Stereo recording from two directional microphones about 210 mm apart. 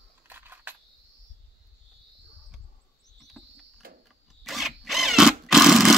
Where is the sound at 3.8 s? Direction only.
45° right (ahead or behind).